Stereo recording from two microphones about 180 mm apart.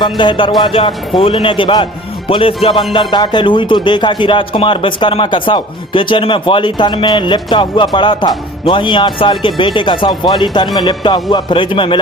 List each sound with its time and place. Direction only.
0.0 s speech: 25° left (ahead or behind)